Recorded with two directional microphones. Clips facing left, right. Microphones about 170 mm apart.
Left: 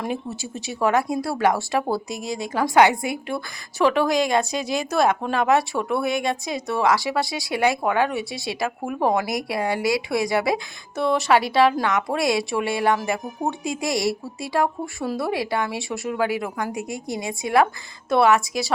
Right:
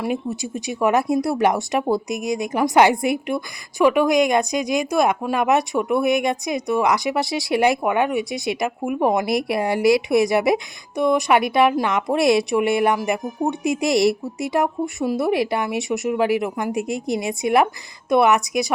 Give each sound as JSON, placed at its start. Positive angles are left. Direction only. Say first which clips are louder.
{"t": 0.0, "sound": "a woman's voice", "louder": "right 4 dB", "side_deg": -15}